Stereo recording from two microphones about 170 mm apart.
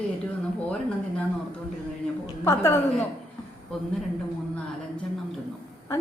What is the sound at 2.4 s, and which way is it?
Speech, 15° left (ahead or behind).